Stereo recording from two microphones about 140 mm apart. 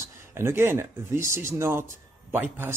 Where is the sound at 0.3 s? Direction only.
15° right (ahead or behind).